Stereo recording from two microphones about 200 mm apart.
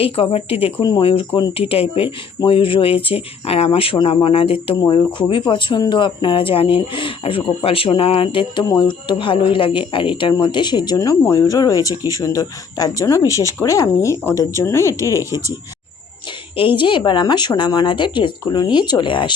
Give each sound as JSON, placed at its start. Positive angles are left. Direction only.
{"t": 0.0, "sound": "speech", "side_deg": 30}
{"t": 16.6, "sound": "speech", "side_deg": 25}